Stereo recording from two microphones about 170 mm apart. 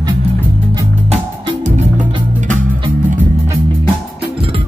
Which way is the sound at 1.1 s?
40° right (ahead or behind).